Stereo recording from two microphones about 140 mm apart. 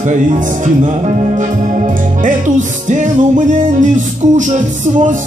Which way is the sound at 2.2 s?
65° right (ahead or behind).